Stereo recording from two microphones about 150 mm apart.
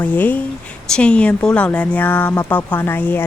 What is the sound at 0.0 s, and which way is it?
A woman's voice, 10° left (ahead or behind).